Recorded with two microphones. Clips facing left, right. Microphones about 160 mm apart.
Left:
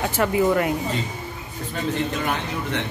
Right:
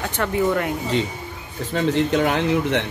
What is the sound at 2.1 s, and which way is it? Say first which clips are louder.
Speech: right 7 dB; 85° right.